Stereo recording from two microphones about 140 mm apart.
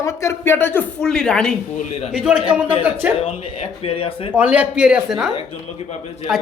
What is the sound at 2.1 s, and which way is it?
A man's voice, 5° right (ahead or behind).